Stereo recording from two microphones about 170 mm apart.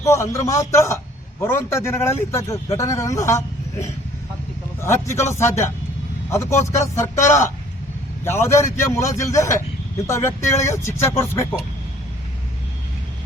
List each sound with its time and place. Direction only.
0.0 s a man's voice: 15° left (ahead or behind)
8.2 s a man's voice: 15° left (ahead or behind)